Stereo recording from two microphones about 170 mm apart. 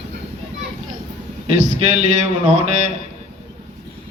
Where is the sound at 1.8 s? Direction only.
40° right (ahead or behind).